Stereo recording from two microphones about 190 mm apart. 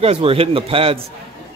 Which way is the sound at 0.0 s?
30° right (ahead or behind).